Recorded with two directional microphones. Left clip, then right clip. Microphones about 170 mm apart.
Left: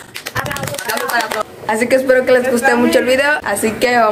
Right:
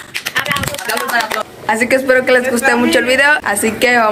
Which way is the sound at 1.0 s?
20° left (ahead or behind).